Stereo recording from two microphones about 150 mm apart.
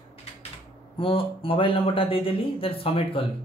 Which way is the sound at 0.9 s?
35° left (ahead or behind).